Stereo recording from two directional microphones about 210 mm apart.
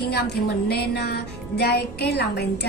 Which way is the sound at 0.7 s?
50° left (ahead or behind).